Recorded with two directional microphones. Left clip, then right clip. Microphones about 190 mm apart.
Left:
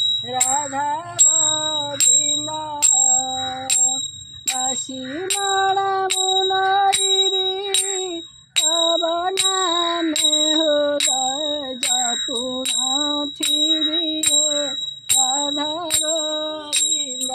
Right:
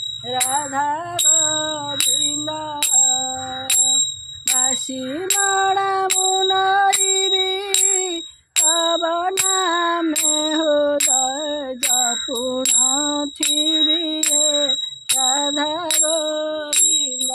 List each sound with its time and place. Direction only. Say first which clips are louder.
0.3 s music: right 1 dB; 20° right (ahead or behind)
5.4 s music: right 1 dB; 15° right (ahead or behind)
8.5 s a sound: even; 10° right (ahead or behind)
9.5 s music: right 2 dB; 10° right (ahead or behind)
12.9 s music: even; 10° right (ahead or behind)